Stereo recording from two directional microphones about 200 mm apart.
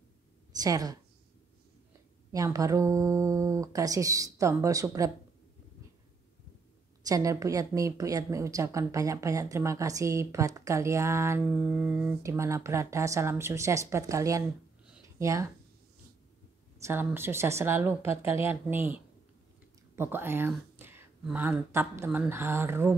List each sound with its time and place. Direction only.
0.6 s a woman's voice: 20° right (ahead or behind)
2.3 s a woman's voice: 15° right (ahead or behind)
7.1 s a woman's voice: 15° right (ahead or behind)
16.8 s a woman's voice: 10° right (ahead or behind)
20.0 s speech: 10° right (ahead or behind)